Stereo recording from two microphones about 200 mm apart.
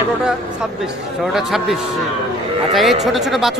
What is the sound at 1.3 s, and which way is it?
A man's voice, centre (ahead or behind).